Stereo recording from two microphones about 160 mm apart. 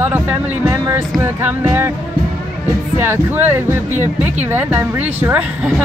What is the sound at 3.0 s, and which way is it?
Speech, 15° right (ahead or behind).